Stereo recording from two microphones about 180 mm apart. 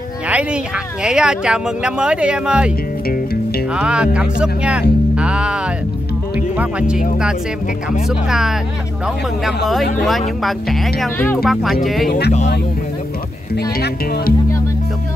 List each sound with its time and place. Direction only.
0.3 s a sound: 5° right (ahead or behind)
1.0 s speech: 5° right (ahead or behind)
3.7 s speech: 5° right (ahead or behind)
5.1 s music: 5° right (ahead or behind)
6.3 s speech: 5° right (ahead or behind)
8.1 s speech: centre (ahead or behind)
9.9 s speech: centre (ahead or behind)
13.6 s speech: 60° left (ahead or behind)